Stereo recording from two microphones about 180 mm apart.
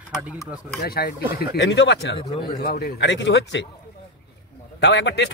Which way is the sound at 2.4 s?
60° left (ahead or behind).